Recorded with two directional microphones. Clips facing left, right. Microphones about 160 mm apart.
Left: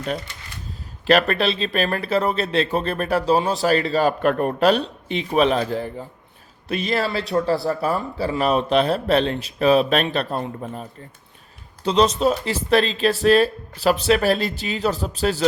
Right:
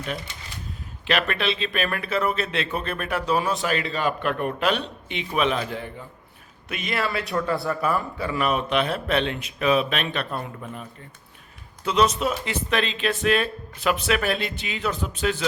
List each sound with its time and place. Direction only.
1.0 s speech: 40° left (ahead or behind)